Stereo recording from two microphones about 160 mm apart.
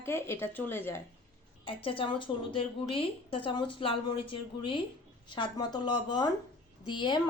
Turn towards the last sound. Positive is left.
turn(degrees=30)  # may be behind; listen again after turning